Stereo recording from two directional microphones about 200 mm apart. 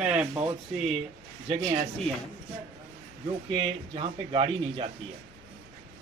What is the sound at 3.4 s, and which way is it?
Speech, 25° right (ahead or behind).